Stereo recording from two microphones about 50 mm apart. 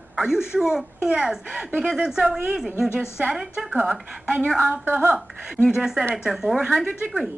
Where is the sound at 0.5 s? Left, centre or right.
Centre.